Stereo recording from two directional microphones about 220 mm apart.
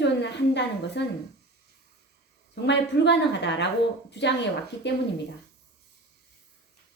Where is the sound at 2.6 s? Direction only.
50° left (ahead or behind).